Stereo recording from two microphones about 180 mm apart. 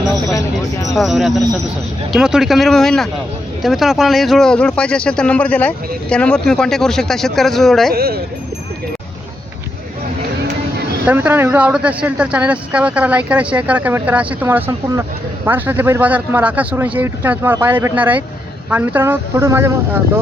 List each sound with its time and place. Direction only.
0.3 s speech: 20° left (ahead or behind)
0.9 s speech: centre (ahead or behind)
7.9 s speech: 60° right (ahead or behind)
11.0 s speech: 10° right (ahead or behind)